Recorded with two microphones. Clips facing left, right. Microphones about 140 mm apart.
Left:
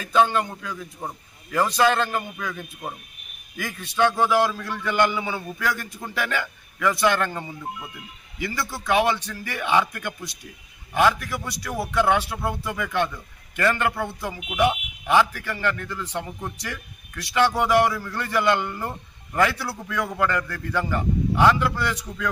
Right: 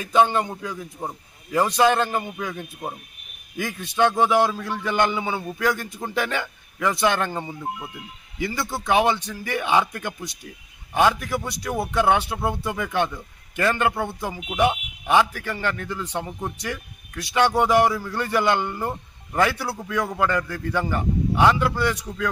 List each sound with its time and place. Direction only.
0.0 s a man's voice: 25° right (ahead or behind)